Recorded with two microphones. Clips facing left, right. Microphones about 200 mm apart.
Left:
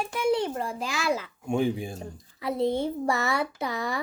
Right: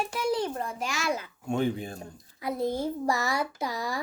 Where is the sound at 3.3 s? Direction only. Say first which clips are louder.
Left 2 dB; 60° left (ahead or behind).